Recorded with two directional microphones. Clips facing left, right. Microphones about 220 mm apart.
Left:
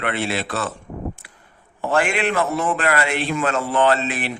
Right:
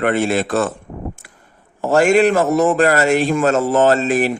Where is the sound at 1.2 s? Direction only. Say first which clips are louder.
Right 3 dB; 50° right (ahead or behind).